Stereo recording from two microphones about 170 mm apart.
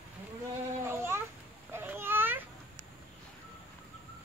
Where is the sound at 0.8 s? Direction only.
15° right (ahead or behind).